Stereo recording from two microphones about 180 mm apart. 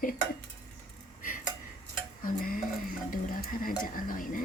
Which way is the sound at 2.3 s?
50° left (ahead or behind).